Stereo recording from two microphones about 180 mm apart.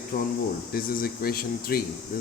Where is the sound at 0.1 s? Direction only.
50° left (ahead or behind).